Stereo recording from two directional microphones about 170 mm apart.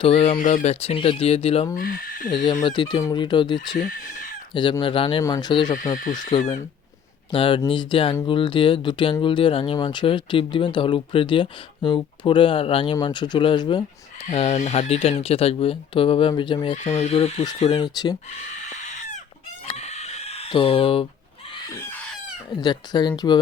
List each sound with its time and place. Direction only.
0.0 s speech: 35° left (ahead or behind)
0.3 s speech: 50° left (ahead or behind)
1.7 s speech: 55° left (ahead or behind)
2.3 s speech: 25° left (ahead or behind)
14.3 s speech: 40° left (ahead or behind)
16.7 s speech: 40° left (ahead or behind); by 18.2 s 25° left (ahead or behind)
18.3 s livestock: 40° left (ahead or behind)
19.6 s chicken: 40° left (ahead or behind)
22.4 s speech: 25° left (ahead or behind)